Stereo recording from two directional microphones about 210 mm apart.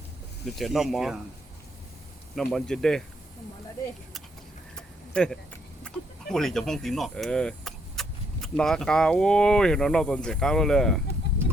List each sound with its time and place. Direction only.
0.4 s speech: centre (ahead or behind)
2.3 s speech: centre (ahead or behind)
5.1 s speech: 5° left (ahead or behind)